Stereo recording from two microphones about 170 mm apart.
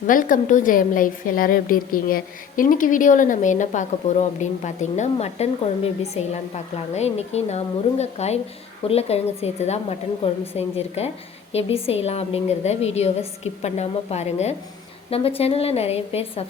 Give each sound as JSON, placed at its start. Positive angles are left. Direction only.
{"t": 0.1, "sound": "a woman's voice", "side_deg": 55}